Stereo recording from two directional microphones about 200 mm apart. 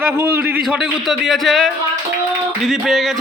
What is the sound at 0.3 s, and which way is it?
Speech, 5° right (ahead or behind).